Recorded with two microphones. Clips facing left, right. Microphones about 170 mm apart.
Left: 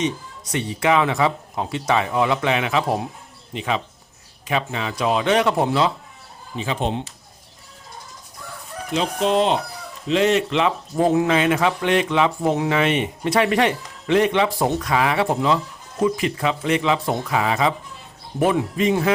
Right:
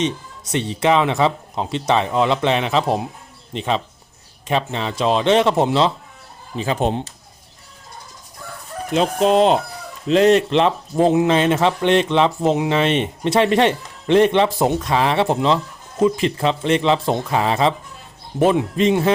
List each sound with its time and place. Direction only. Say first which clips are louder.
0.5 s speech: right 2 dB; 25° right (ahead or behind)
4.4 s speech: right 3 dB; 30° right (ahead or behind)
6.7 s speech: right 4 dB; 45° right (ahead or behind)
9.0 s speech: right 4 dB; 40° right (ahead or behind)
10.9 s speech: right 2 dB; 20° right (ahead or behind)